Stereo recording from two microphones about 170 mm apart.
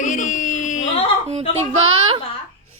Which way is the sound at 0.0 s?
45° left (ahead or behind).